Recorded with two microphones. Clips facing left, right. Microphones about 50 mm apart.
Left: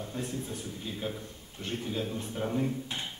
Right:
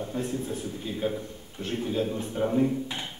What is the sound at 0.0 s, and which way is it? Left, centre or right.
A man's voice, centre.